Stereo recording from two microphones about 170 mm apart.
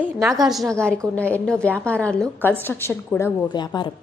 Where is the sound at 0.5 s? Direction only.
Centre (ahead or behind).